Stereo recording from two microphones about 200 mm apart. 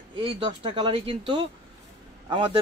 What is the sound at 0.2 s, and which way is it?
Speech, 30° right (ahead or behind).